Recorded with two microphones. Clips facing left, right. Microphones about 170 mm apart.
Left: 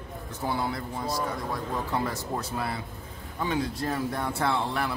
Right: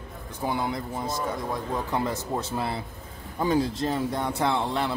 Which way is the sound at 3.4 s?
35° right (ahead or behind).